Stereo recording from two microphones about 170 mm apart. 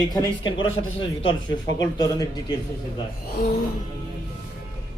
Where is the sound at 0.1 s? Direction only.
25° left (ahead or behind).